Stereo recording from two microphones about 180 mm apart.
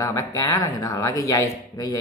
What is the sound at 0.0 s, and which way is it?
Speech, 15° left (ahead or behind).